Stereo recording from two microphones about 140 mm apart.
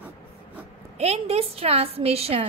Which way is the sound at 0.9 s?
45° right (ahead or behind).